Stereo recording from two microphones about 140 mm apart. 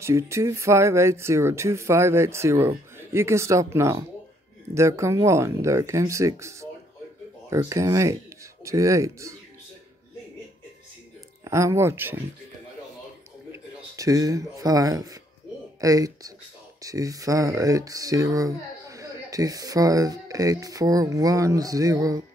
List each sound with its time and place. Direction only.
0.0 s speech: 20° right (ahead or behind)
11.4 s speech: 20° right (ahead or behind)
13.5 s speech: 25° right (ahead or behind)